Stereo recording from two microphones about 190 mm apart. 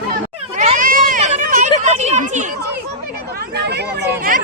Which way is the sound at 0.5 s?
40° right (ahead or behind).